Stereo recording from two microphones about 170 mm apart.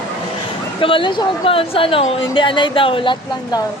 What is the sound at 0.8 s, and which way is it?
A woman's voice, 30° left (ahead or behind).